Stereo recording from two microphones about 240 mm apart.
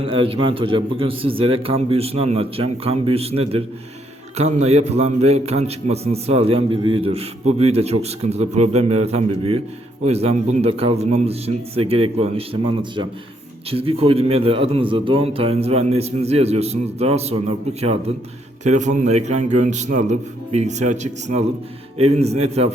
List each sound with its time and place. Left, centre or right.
0.0 s a man's voice: right
13.7 s a man's voice: right